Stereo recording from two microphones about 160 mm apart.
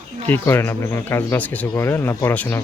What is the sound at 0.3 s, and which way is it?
Speech, 15° left (ahead or behind).